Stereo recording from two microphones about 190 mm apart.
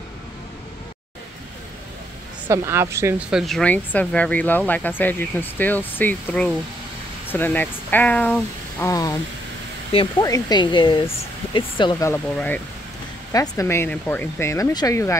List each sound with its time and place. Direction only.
2.4 s speech: 15° right (ahead or behind); by 12.2 s 20° left (ahead or behind)
12.4 s speech: 5° left (ahead or behind)